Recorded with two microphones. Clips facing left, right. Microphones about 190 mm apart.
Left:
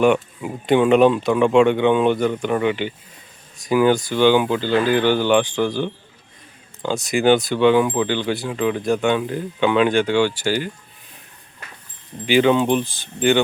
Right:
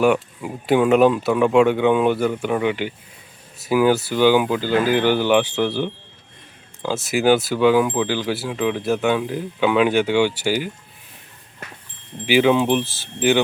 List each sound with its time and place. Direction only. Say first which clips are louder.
0.0 s speech: left 1 dB; 5° right (ahead or behind)
12.2 s speech: even; 5° right (ahead or behind)